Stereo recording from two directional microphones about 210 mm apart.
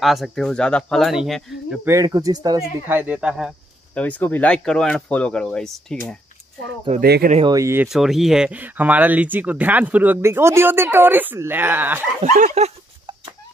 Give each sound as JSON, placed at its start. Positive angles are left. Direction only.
{"t": 0.0, "sound": "speech", "side_deg": 0}
{"t": 1.9, "sound": "speech", "side_deg": -15}
{"t": 7.0, "sound": "speech", "side_deg": -45}
{"t": 7.3, "sound": "speech", "side_deg": -20}
{"t": 12.2, "sound": "a sound", "side_deg": -35}